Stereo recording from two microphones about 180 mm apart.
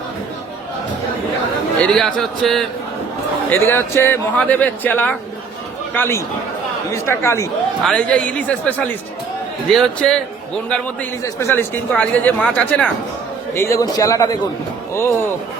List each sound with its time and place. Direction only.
1.9 s speech: centre (ahead or behind)
3.5 s speech: 10° left (ahead or behind)
11.2 s a man's voice: 15° left (ahead or behind)